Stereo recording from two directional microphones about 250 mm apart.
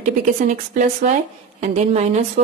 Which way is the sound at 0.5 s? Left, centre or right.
Right.